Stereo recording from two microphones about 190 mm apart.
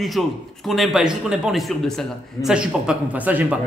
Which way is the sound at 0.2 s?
Centre (ahead or behind).